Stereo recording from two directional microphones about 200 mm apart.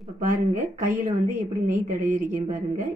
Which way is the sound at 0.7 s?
45° right (ahead or behind).